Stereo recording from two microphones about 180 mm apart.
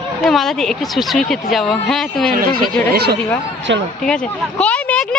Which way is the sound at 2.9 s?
65° right (ahead or behind).